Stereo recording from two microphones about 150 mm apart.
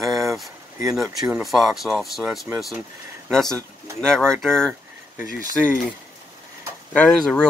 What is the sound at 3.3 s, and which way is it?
Speech, 5° left (ahead or behind).